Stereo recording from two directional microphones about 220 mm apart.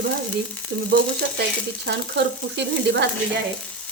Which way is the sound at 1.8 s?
50° right (ahead or behind).